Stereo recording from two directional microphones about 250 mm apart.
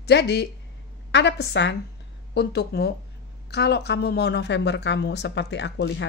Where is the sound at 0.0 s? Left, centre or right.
Left.